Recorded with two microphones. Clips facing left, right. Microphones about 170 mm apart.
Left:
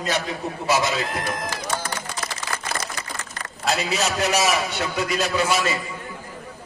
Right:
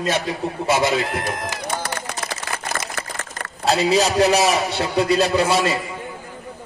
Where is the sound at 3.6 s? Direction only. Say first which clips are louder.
Right 6 dB; 30° right (ahead or behind).